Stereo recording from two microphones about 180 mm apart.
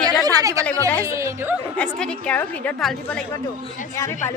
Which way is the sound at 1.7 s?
5° left (ahead or behind).